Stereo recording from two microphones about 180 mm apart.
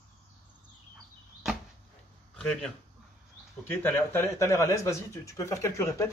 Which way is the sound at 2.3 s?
5° left (ahead or behind).